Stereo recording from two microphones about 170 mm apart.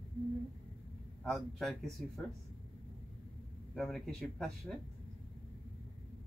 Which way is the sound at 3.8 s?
Centre (ahead or behind).